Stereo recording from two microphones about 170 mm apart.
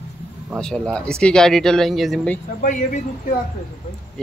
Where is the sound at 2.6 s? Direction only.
50° left (ahead or behind).